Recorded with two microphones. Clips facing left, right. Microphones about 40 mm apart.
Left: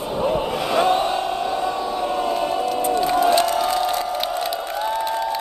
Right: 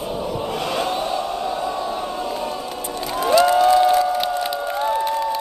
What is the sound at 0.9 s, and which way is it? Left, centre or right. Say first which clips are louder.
Chant: left 2 dB; left.